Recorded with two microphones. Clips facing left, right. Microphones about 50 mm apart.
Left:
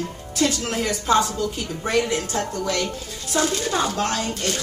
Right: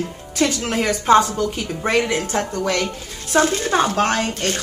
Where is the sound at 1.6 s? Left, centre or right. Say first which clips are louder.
Right 2 dB; right.